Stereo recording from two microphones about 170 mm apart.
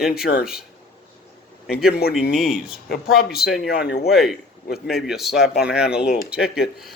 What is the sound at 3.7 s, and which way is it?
Speech, 75° left (ahead or behind).